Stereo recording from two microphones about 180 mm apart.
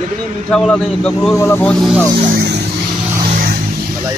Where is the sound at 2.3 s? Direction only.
70° right (ahead or behind).